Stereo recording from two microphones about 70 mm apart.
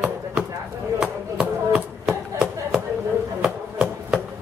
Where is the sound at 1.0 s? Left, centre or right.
Centre.